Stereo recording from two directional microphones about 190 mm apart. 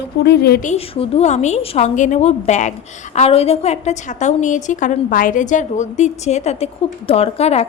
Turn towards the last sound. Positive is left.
turn(degrees=35)  # may be behind; listen again after turning